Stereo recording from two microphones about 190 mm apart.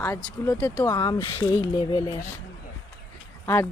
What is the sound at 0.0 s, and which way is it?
Speech, 15° left (ahead or behind).